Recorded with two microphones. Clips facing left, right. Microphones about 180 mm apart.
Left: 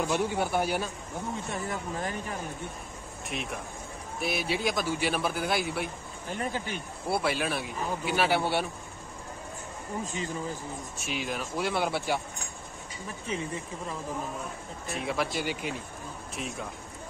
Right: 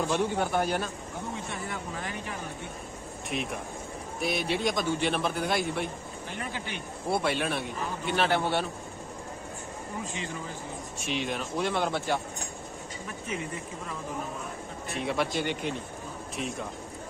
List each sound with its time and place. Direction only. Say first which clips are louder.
0.0 s speech: right 1 dB; 10° left (ahead or behind)
1.5 s speech: left 2 dB; 45° left (ahead or behind)
3.3 s a man's voice: right 3 dB; centre (ahead or behind)
6.3 s speech: left 5 dB; 40° left (ahead or behind)
7.1 s a man's voice: right 1 dB; 5° left (ahead or behind)
11.0 s a man's voice: right 3 dB; centre (ahead or behind)
13.3 s speech: left 2 dB; 30° left (ahead or behind)
14.9 s a man's voice: right 1 dB; centre (ahead or behind)